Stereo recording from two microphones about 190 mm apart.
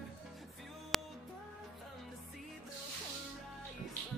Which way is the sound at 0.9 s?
Centre (ahead or behind).